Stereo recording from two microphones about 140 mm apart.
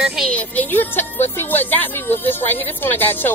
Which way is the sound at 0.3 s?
10° left (ahead or behind).